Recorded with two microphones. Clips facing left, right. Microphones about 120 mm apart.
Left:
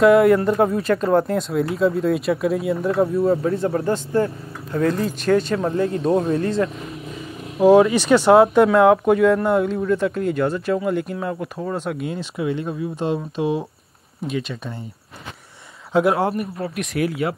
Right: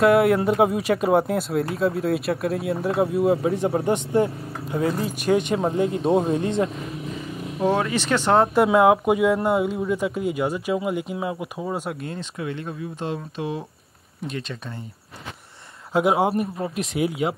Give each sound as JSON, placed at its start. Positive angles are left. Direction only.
{"t": 0.0, "sound": "speech", "side_deg": -5}
{"t": 4.7, "sound": "speech", "side_deg": -5}
{"t": 7.6, "sound": "speech", "side_deg": 15}
{"t": 8.6, "sound": "speech", "side_deg": -10}
{"t": 12.0, "sound": "speech", "side_deg": 10}
{"t": 14.2, "sound": "speech", "side_deg": 5}
{"t": 15.9, "sound": "speech", "side_deg": -15}